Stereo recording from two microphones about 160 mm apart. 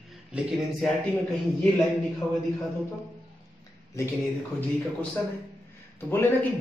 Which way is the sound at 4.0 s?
20° left (ahead or behind).